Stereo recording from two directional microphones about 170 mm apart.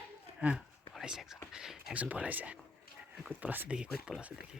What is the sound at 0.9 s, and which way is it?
Whispering, centre (ahead or behind).